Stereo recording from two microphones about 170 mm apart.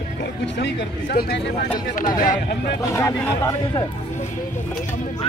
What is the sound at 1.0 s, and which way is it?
Speech, 65° left (ahead or behind).